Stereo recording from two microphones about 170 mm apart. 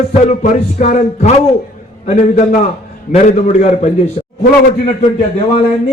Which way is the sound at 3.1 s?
45° left (ahead or behind).